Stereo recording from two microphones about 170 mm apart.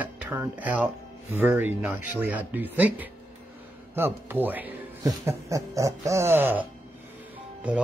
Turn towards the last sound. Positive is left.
turn(degrees=-5)  # may be behind; listen again after turning